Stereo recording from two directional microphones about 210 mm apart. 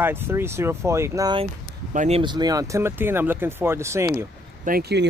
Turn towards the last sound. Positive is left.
turn(degrees=-50)  # may be behind; listen again after turning